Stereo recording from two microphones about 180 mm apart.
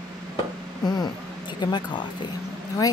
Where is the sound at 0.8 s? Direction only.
25° left (ahead or behind).